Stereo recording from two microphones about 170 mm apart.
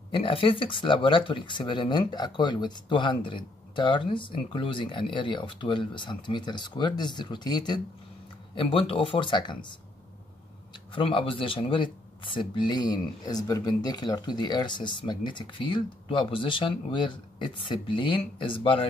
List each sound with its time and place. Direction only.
0.1 s speech: 30° left (ahead or behind)
10.9 s speech: 30° left (ahead or behind)